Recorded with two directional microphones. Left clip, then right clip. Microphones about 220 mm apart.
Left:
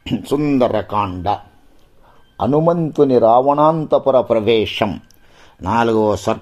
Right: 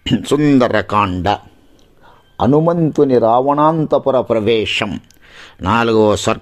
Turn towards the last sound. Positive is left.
turn(degrees=-25)  # may be behind; listen again after turning